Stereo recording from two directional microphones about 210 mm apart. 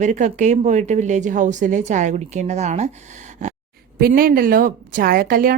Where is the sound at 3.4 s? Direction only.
35° right (ahead or behind).